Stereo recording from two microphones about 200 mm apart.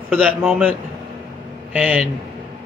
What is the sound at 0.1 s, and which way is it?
A man's voice, 10° right (ahead or behind).